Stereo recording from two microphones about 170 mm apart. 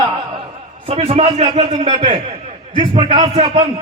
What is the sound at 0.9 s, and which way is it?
A man's voice, 35° right (ahead or behind).